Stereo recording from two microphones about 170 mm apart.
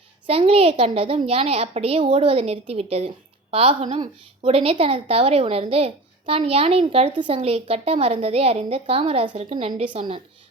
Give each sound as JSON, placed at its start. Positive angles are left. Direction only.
{"t": 0.3, "sound": "a woman's voice", "side_deg": -35}